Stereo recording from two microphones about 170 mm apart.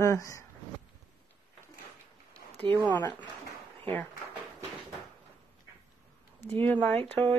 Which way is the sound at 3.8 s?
10° left (ahead or behind).